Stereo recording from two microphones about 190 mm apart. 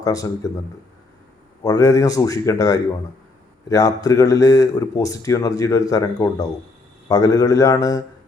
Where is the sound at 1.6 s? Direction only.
20° left (ahead or behind).